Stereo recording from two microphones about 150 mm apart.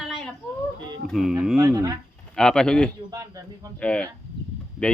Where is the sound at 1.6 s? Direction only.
20° right (ahead or behind).